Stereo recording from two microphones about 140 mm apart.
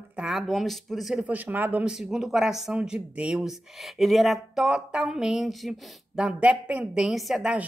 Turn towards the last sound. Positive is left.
turn(degrees=-5)  # may be behind; listen again after turning